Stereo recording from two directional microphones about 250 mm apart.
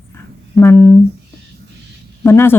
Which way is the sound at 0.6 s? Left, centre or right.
Centre.